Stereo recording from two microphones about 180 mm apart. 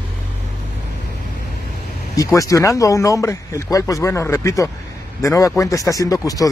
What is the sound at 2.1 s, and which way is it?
Speech, 20° left (ahead or behind).